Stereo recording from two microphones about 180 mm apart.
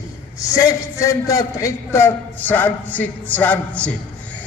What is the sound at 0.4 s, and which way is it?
A man's voice, 20° left (ahead or behind).